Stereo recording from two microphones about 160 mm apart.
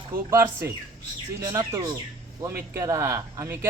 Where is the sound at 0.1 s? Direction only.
15° right (ahead or behind).